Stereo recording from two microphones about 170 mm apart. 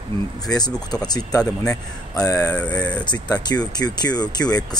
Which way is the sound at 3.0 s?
25° left (ahead or behind).